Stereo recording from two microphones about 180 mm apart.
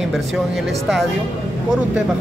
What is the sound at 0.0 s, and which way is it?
Speech, centre (ahead or behind).